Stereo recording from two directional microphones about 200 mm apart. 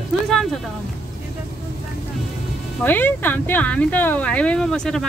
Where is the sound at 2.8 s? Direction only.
10° left (ahead or behind).